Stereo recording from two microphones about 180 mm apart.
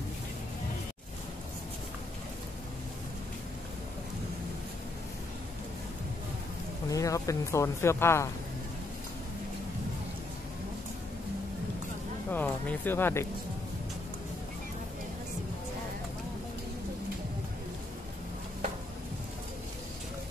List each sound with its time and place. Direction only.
6.9 s speech: 20° left (ahead or behind)
12.3 s music: 10° left (ahead or behind)